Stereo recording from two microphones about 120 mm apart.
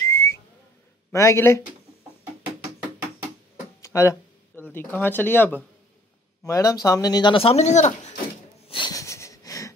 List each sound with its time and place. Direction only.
0.1 s whistle: 20° left (ahead or behind)
1.1 s speech: 25° left (ahead or behind)
3.8 s a sound: 25° left (ahead or behind)
4.6 s speech: 15° left (ahead or behind)
6.4 s speech: 30° left (ahead or behind)
7.3 s speech: 50° left (ahead or behind)
7.6 s speech: 75° left (ahead or behind)
8.6 s a sound: 40° left (ahead or behind)
8.9 s wheeze: 25° left (ahead or behind)